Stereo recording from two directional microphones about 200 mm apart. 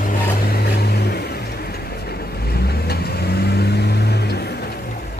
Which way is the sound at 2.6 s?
50° left (ahead or behind).